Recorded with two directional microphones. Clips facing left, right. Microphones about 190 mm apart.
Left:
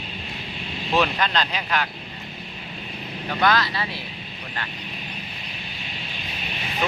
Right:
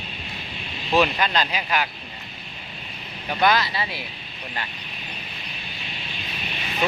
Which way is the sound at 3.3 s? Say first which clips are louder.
Right 1 dB; 15° right (ahead or behind).